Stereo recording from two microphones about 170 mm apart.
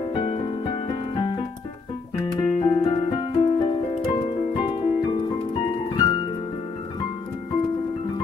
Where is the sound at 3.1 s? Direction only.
25° left (ahead or behind).